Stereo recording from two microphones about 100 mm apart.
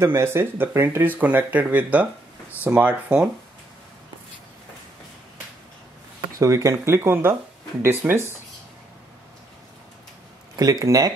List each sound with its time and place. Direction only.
0.0 s speech: 25° right (ahead or behind)
6.3 s speech: 30° right (ahead or behind)
10.5 s speech: 40° right (ahead or behind)